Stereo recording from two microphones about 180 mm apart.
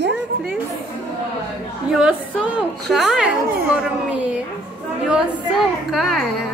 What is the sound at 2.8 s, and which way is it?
Speech, centre (ahead or behind).